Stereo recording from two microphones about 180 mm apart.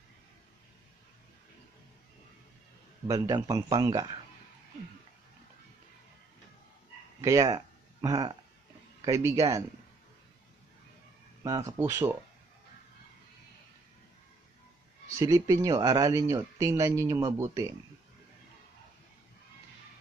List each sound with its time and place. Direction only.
3.1 s speech: 20° right (ahead or behind)
7.2 s a sound: 20° right (ahead or behind)
9.0 s speech: 15° right (ahead or behind)
11.4 s speech: 20° right (ahead or behind)
15.1 s speech: 20° right (ahead or behind)